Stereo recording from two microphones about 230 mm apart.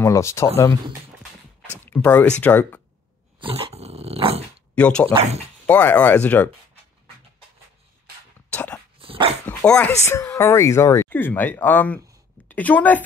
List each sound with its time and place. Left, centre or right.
0.0 s speech: centre
1.9 s speech: centre
3.3 s dog: right
4.7 s speech: centre
5.1 s speech: right
5.7 s speech: centre
8.5 s dog: centre
9.0 s dog: right
9.5 s a woman's voice: centre